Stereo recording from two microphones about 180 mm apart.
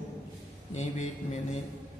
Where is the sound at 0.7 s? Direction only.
40° left (ahead or behind).